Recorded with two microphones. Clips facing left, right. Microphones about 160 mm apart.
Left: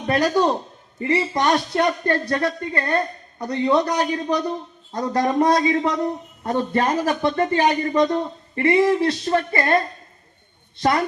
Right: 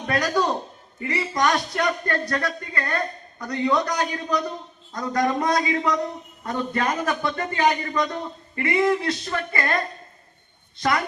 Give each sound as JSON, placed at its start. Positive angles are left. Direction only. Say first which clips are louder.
{"t": 0.1, "sound": "a man's voice", "louder": "left 4 dB", "side_deg": 25}
{"t": 10.8, "sound": "speech", "louder": "left 3 dB", "side_deg": 30}